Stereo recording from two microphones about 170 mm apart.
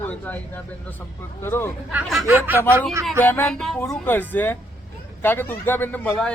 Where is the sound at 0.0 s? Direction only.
10° left (ahead or behind).